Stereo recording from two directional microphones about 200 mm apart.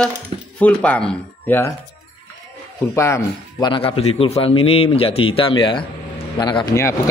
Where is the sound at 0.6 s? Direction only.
5° left (ahead or behind).